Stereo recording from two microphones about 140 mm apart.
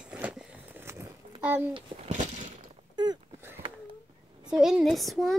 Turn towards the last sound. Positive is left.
turn(degrees=0)  # may be behind; listen again after turning